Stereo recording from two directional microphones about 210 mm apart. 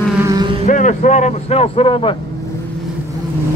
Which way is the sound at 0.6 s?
35° left (ahead or behind).